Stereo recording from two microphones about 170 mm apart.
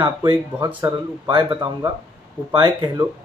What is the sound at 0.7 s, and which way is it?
Speech, 10° right (ahead or behind).